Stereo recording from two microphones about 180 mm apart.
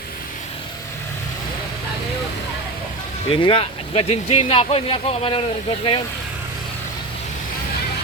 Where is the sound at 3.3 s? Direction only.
30° left (ahead or behind).